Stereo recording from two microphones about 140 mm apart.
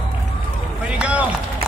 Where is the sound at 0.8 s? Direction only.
10° right (ahead or behind).